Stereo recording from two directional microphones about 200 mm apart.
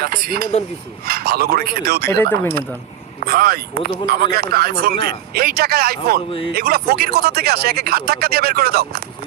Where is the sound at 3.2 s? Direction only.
45° right (ahead or behind).